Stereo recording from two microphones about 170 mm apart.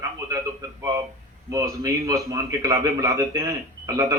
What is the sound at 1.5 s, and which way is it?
A man's voice, 20° right (ahead or behind).